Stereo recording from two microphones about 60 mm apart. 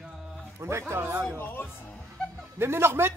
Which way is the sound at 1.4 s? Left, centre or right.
Left.